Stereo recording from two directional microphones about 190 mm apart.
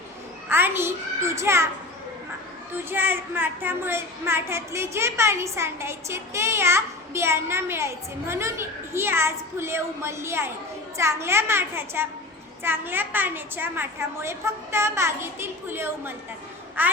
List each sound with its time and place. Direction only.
0.4 s a child's voice: 10° right (ahead or behind)
2.9 s a woman's voice: 10° right (ahead or behind)